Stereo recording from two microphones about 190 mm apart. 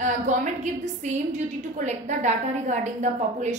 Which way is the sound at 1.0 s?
40° right (ahead or behind).